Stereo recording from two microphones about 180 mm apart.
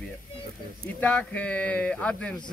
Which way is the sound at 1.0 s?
10° left (ahead or behind).